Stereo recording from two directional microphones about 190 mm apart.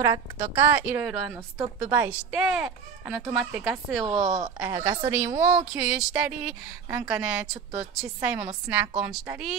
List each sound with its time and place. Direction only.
0.0 s a woman's voice: 15° right (ahead or behind)
4.1 s speech: 40° right (ahead or behind)
4.6 s a woman's voice: 15° right (ahead or behind)